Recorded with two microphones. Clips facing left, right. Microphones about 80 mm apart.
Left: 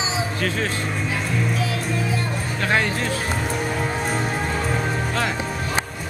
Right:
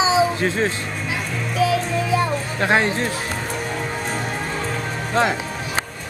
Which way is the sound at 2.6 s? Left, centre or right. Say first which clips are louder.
Right 3 dB; right.